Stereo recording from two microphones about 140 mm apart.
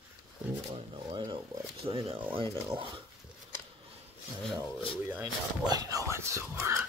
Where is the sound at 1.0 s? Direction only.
35° right (ahead or behind).